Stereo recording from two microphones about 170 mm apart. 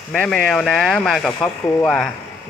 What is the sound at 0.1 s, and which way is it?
Speech, 5° left (ahead or behind).